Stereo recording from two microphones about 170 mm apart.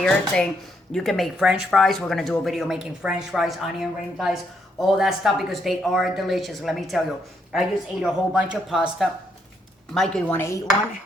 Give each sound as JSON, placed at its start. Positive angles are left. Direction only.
{"t": 0.0, "sound": "speech", "side_deg": 5}
{"t": 10.3, "sound": "dishes", "side_deg": 15}